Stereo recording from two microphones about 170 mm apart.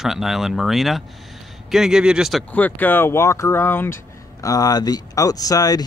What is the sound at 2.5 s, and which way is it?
Speech, 10° left (ahead or behind).